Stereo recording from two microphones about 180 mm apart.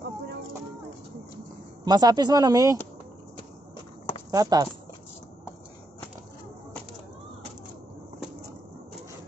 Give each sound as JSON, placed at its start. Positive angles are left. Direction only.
{"t": 1.9, "sound": "speech", "side_deg": -20}
{"t": 4.3, "sound": "speech", "side_deg": -20}